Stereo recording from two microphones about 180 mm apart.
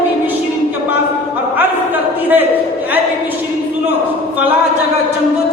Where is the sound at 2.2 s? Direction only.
10° right (ahead or behind).